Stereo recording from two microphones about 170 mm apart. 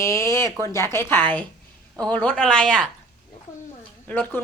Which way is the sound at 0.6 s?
15° left (ahead or behind).